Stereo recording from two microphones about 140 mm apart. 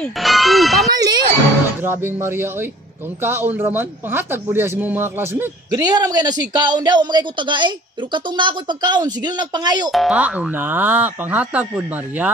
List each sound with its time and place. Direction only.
0.2 s speech: centre (ahead or behind)
0.9 s speech: 25° right (ahead or behind)
1.8 s a man's voice: 15° right (ahead or behind)
5.7 s speech: 30° right (ahead or behind)
9.8 s a man's voice: centre (ahead or behind)